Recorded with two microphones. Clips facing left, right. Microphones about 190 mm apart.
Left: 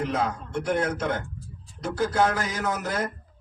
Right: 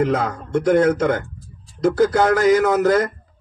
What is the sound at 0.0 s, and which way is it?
Speech, 90° right.